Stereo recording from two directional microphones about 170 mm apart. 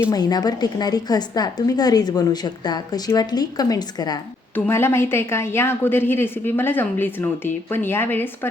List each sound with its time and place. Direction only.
0.0 s a woman's voice: 20° left (ahead or behind)
4.5 s a woman's voice: 15° left (ahead or behind)